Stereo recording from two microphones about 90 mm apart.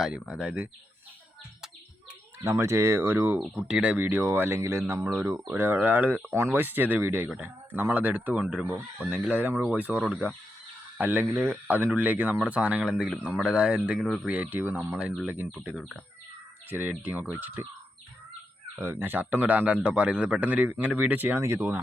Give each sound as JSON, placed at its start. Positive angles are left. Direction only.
{"t": 0.0, "sound": "speech", "side_deg": -10}
{"t": 2.4, "sound": "speech", "side_deg": -30}
{"t": 3.6, "sound": "speech", "side_deg": -10}
{"t": 10.9, "sound": "speech", "side_deg": -20}
{"t": 16.6, "sound": "speech", "side_deg": -20}
{"t": 18.8, "sound": "speech", "side_deg": -30}